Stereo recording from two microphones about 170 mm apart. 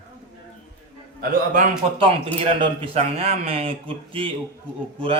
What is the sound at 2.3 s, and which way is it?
A man's voice, 35° right (ahead or behind).